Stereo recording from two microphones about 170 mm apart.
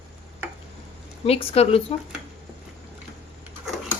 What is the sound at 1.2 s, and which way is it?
Speech, 35° left (ahead or behind).